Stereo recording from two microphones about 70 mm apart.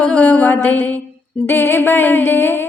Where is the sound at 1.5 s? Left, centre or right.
Left.